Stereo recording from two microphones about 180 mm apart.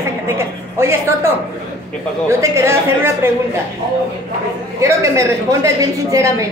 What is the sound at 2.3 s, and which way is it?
Speech, 15° right (ahead or behind).